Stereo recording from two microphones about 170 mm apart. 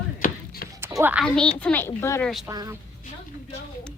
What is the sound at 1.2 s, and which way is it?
A woman's voice, 5° left (ahead or behind).